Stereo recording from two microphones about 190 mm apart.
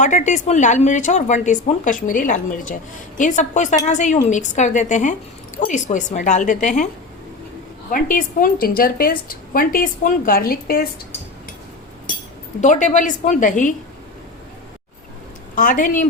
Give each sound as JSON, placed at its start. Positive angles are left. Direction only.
{"t": 0.0, "sound": "speech", "side_deg": 40}
{"t": 7.9, "sound": "a woman's voice", "side_deg": 45}
{"t": 12.5, "sound": "speech", "side_deg": 40}
{"t": 15.5, "sound": "a woman's voice", "side_deg": 45}